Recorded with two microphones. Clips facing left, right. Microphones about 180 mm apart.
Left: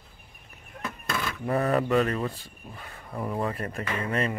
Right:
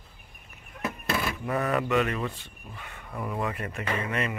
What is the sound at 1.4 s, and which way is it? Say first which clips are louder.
Speech: left 6 dB; 30° left (ahead or behind).